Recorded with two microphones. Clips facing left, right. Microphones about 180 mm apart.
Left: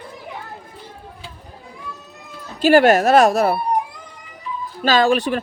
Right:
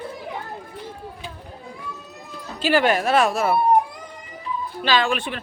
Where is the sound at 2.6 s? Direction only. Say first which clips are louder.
Left 7 dB; 45° left (ahead or behind).